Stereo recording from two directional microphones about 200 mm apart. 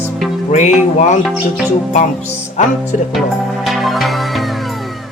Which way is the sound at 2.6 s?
40° left (ahead or behind).